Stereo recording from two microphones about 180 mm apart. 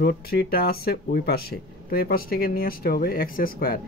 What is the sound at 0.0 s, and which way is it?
Speech, 60° left (ahead or behind).